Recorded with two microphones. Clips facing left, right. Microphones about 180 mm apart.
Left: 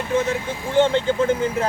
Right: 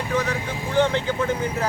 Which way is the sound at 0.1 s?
25° left (ahead or behind).